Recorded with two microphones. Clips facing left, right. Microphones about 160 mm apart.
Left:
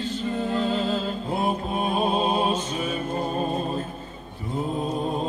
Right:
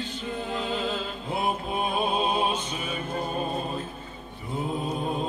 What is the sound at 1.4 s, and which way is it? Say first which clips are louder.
Mantra: left 2 dB; 40° left (ahead or behind).